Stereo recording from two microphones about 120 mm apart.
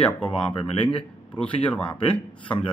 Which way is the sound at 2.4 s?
45° left (ahead or behind).